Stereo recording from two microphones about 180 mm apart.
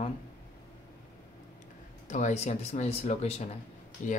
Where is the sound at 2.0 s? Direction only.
40° left (ahead or behind).